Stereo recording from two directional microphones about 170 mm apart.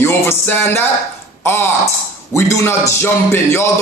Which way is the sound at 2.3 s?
15° left (ahead or behind).